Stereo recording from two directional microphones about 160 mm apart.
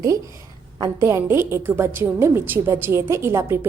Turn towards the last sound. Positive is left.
turn(degrees=-15)  # may be behind; listen again after turning